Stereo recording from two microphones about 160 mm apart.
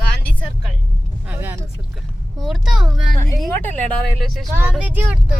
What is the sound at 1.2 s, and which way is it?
Speech, 10° right (ahead or behind).